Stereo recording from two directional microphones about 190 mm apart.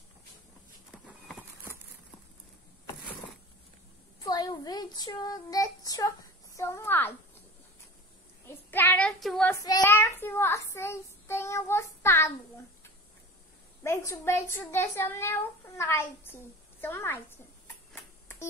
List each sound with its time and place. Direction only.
4.2 s child singing: 20° left (ahead or behind)
8.5 s child singing: 10° left (ahead or behind)
9.7 s a child's voice: 15° left (ahead or behind)
13.8 s a child's voice: 15° left (ahead or behind)